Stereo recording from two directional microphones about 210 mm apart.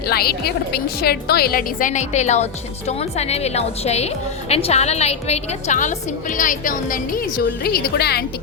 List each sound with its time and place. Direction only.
0.1 s a woman's voice: 45° left (ahead or behind)